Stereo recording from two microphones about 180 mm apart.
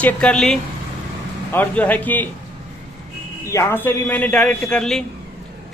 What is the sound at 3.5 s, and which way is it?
A man's voice, 15° left (ahead or behind).